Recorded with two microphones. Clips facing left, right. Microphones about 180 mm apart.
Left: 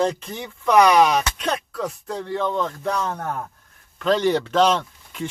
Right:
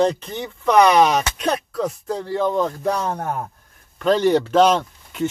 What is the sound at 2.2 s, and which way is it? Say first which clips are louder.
Speech: right 4 dB; 35° right (ahead or behind).